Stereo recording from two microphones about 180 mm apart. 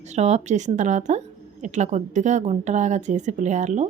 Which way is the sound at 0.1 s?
40° right (ahead or behind).